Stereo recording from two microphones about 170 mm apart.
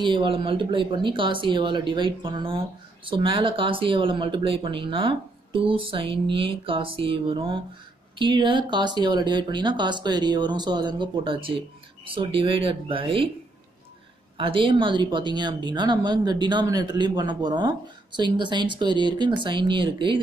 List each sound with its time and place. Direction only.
0.0 s a woman's voice: 30° right (ahead or behind)
14.3 s a woman's voice: 30° right (ahead or behind)